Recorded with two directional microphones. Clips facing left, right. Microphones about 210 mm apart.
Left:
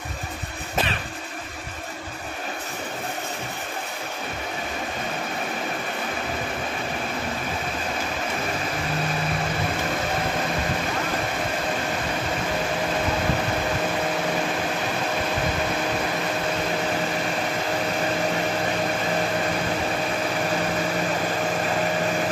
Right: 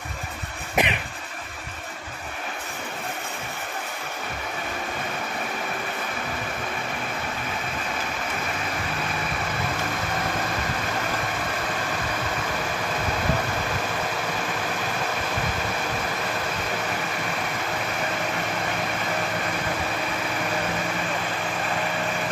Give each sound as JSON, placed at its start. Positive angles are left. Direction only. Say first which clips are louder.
{"t": 0.8, "sound": "vehicle", "louder": "right 2 dB", "side_deg": -15}